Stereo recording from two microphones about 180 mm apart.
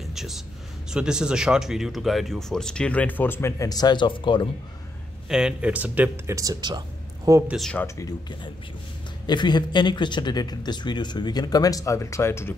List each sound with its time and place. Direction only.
0.1 s a sound: centre (ahead or behind)
0.9 s speech: 5° right (ahead or behind); by 4.5 s 25° left (ahead or behind)
5.3 s speech: 5° right (ahead or behind)
7.5 s speech: centre (ahead or behind)
7.8 s speech: 15° left (ahead or behind)